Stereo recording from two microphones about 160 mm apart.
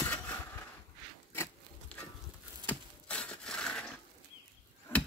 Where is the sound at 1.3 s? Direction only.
15° left (ahead or behind).